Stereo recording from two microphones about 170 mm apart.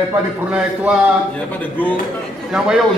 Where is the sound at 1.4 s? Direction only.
10° left (ahead or behind).